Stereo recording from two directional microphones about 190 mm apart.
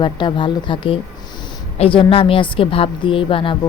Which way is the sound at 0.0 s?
25° left (ahead or behind).